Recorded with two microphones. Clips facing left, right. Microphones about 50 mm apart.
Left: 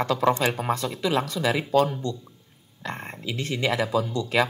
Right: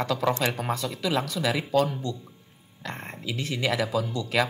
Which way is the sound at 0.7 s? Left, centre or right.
Left.